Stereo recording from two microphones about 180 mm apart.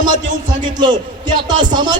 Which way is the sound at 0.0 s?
45° right (ahead or behind).